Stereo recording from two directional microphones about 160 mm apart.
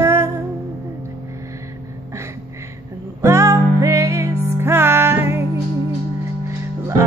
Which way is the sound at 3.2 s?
20° right (ahead or behind).